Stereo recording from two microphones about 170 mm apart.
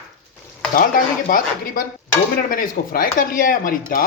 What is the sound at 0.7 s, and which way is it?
Speech, 60° left (ahead or behind).